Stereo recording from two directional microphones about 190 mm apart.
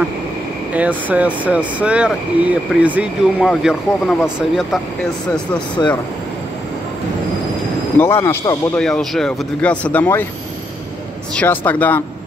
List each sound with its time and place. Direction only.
0.7 s speech: 10° right (ahead or behind)
5.8 s speech: 20° left (ahead or behind)
8.0 s speech: 15° left (ahead or behind)
8.7 s speech: 5° left (ahead or behind)
11.3 s speech: 10° left (ahead or behind)